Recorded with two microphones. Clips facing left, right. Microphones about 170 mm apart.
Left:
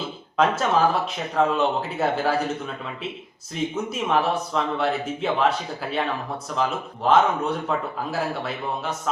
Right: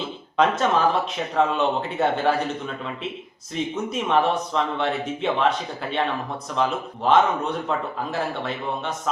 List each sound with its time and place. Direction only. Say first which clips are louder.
0.3 s a man's voice: even; 5° left (ahead or behind)